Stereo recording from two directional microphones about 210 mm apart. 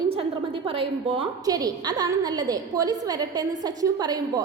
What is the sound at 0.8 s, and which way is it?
A woman's voice, 25° right (ahead or behind).